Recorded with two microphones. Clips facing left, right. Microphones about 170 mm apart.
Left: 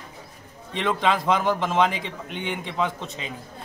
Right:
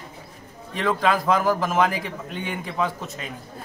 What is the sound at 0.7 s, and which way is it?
A man's voice, 20° left (ahead or behind).